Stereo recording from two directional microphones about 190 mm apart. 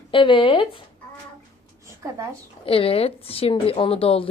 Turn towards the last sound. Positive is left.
turn(degrees=30)  # may be behind; listen again after turning